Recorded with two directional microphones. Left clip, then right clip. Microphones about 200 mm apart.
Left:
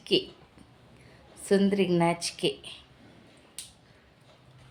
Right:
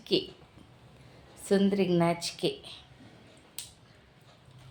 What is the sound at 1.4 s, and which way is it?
A woman's voice, 10° left (ahead or behind).